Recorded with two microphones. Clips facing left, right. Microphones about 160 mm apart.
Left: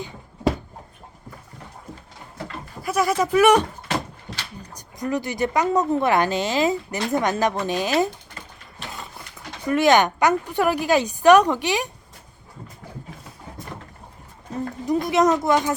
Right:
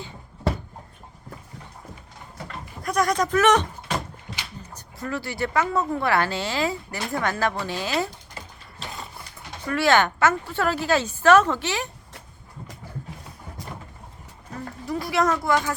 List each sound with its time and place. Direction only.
2.8 s speech: 5° left (ahead or behind)
4.7 s speech: 15° left (ahead or behind)
9.6 s a woman's voice: 20° left (ahead or behind)
14.5 s speech: 20° left (ahead or behind)